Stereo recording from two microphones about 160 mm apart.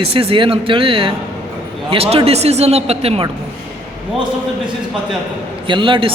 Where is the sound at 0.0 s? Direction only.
35° right (ahead or behind).